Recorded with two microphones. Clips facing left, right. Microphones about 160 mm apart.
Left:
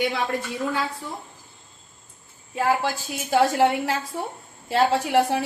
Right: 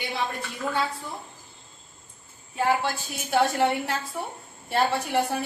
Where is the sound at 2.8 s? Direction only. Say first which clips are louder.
Left 3 dB; 90° left.